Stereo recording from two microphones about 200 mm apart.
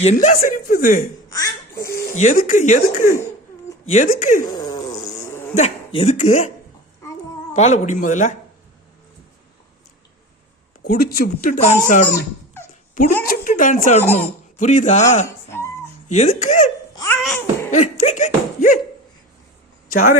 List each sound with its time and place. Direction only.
0.0 s a man's voice: 35° left (ahead or behind)
1.3 s babbling: 15° left (ahead or behind)
2.1 s a man's voice: 40° left (ahead or behind)
4.5 s a sound: 20° left (ahead or behind)
5.5 s a man's voice: 30° left (ahead or behind)
7.5 s a man's voice: 35° left (ahead or behind)
10.8 s speech: 45° left (ahead or behind)
12.9 s a sound: 45° left (ahead or behind)
13.2 s a man's voice: 45° left (ahead or behind)
16.9 s babbling: 15° left (ahead or behind)
17.2 s a sound: centre (ahead or behind)
17.7 s a sound: 35° left (ahead or behind)